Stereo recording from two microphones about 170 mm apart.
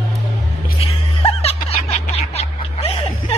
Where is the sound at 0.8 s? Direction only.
35° left (ahead or behind).